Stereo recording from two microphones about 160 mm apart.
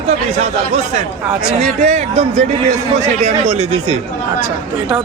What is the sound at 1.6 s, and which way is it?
A man's voice, 45° right (ahead or behind).